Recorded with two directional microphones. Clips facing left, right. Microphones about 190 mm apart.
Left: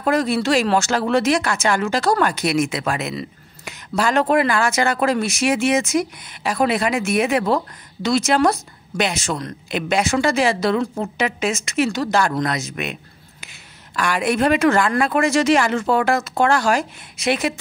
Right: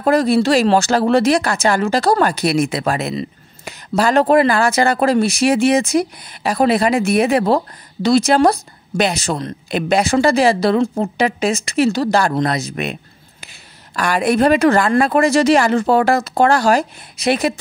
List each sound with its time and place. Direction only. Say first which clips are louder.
0.0 s speech: right 5 dB; 35° right (ahead or behind)